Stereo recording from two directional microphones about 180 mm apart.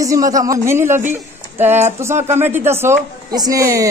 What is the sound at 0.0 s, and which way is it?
Speech, 20° right (ahead or behind).